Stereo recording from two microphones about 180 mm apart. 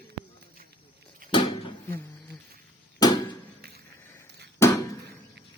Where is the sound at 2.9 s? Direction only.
25° left (ahead or behind).